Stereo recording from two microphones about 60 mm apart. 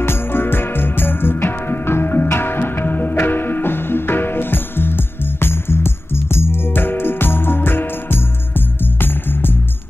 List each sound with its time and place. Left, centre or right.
0.0 s music: left